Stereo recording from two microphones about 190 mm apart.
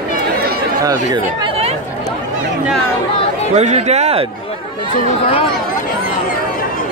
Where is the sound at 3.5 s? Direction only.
35° right (ahead or behind).